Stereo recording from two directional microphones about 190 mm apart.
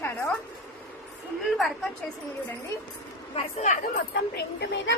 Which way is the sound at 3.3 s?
40° left (ahead or behind).